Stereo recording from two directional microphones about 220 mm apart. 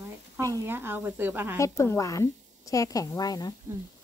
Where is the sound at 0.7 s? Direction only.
10° right (ahead or behind).